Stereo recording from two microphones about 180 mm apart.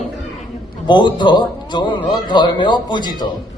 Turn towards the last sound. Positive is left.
turn(degrees=25)  # may be behind; listen again after turning